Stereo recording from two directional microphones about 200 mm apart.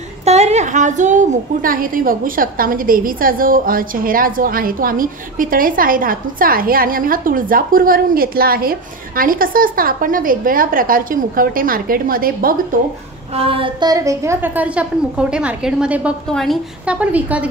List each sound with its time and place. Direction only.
0.2 s a woman's voice: 35° right (ahead or behind)
13.3 s a woman's voice: 30° right (ahead or behind); by 17.5 s 5° right (ahead or behind)